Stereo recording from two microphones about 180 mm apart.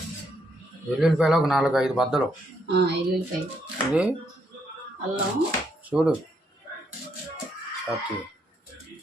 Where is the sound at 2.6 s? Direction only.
70° right (ahead or behind).